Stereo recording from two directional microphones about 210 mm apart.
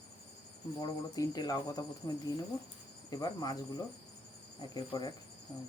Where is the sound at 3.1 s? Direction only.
20° left (ahead or behind).